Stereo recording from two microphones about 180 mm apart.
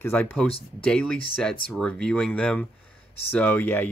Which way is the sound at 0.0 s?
10° left (ahead or behind).